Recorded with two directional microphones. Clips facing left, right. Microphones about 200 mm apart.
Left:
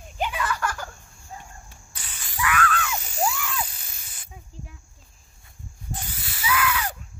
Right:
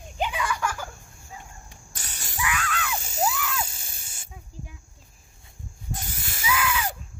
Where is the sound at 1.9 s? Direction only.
45° right (ahead or behind).